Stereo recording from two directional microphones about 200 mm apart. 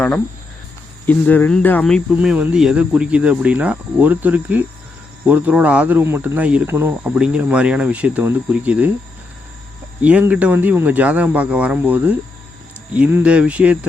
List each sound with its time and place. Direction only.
1.0 s speech: 10° left (ahead or behind)
2.1 s speech: 5° right (ahead or behind)
10.0 s speech: 5° right (ahead or behind)